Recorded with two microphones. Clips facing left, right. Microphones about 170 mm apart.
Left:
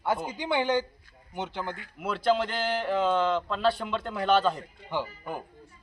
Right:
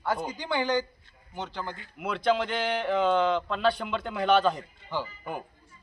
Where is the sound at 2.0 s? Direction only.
Centre (ahead or behind).